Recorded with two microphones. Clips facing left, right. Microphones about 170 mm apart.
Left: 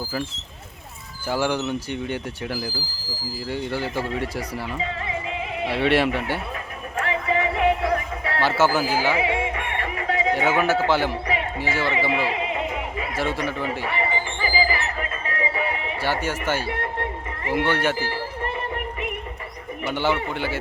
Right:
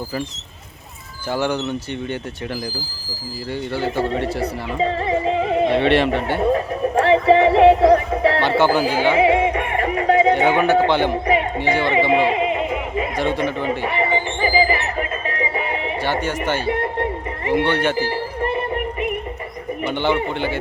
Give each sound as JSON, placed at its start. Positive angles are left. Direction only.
{"t": 1.3, "sound": "speech", "side_deg": 10}
{"t": 3.5, "sound": "speech", "side_deg": 10}
{"t": 4.8, "sound": "music", "side_deg": -40}
{"t": 5.6, "sound": "speech", "side_deg": 10}
{"t": 6.4, "sound": "speech", "side_deg": -35}
{"t": 8.4, "sound": "speech", "side_deg": 5}
{"t": 9.0, "sound": "music", "side_deg": -25}
{"t": 10.8, "sound": "speech", "side_deg": 5}
{"t": 11.8, "sound": "a sound", "side_deg": -20}
{"t": 13.2, "sound": "music", "side_deg": -25}
{"t": 16.0, "sound": "speech", "side_deg": 10}
{"t": 16.6, "sound": "a sound", "side_deg": -25}
{"t": 17.5, "sound": "speech", "side_deg": 5}
{"t": 19.9, "sound": "speech", "side_deg": 5}